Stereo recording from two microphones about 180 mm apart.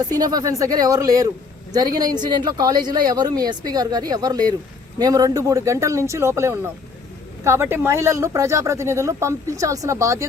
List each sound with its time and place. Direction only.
0.1 s speech: 20° right (ahead or behind)